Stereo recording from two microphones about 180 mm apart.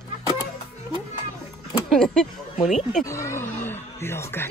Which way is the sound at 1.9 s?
5° left (ahead or behind).